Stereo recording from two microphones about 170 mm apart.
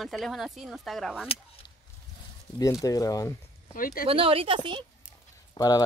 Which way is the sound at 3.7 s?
55° left (ahead or behind).